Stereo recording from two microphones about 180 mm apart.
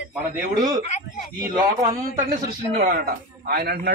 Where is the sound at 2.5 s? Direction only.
50° right (ahead or behind).